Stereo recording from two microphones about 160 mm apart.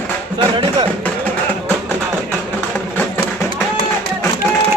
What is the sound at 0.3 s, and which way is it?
Music, 30° right (ahead or behind).